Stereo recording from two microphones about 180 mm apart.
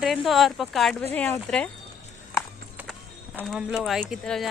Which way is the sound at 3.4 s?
Centre (ahead or behind).